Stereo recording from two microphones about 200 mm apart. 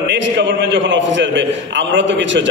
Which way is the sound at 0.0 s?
65° right (ahead or behind).